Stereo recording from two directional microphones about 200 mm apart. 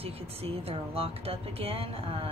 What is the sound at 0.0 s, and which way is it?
A woman's voice, 30° right (ahead or behind).